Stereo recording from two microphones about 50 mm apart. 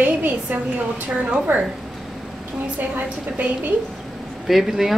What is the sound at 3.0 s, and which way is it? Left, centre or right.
Speech, right.